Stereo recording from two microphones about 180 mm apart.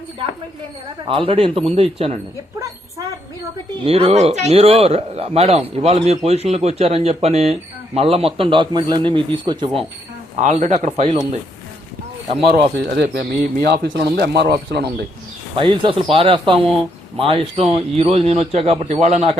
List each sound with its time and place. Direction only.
1.0 s speech: 30° right (ahead or behind)
3.8 s speech: 30° right (ahead or behind)
10.3 s speech: 40° right (ahead or behind)
12.7 s speech: 65° right (ahead or behind)
15.5 s speech: 25° right (ahead or behind)